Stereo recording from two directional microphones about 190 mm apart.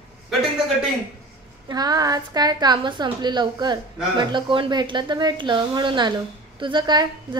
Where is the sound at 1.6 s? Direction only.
20° right (ahead or behind).